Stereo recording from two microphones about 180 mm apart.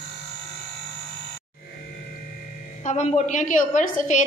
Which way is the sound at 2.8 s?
40° left (ahead or behind).